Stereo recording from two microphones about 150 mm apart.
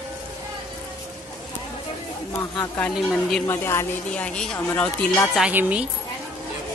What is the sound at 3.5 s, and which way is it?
A woman's voice, 15° left (ahead or behind).